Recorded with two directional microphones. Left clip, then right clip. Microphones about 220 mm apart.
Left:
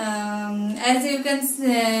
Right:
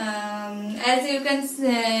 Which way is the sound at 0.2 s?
15° left (ahead or behind).